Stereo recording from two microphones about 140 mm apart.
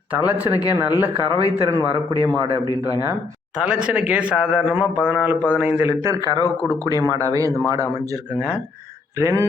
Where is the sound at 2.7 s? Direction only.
25° left (ahead or behind).